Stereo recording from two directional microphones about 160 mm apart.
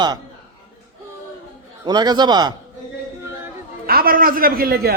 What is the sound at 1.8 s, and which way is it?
Speech, 25° right (ahead or behind).